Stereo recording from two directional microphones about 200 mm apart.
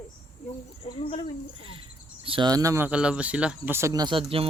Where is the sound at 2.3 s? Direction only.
20° right (ahead or behind).